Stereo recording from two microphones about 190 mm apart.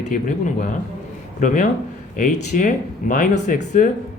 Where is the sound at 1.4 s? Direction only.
40° left (ahead or behind).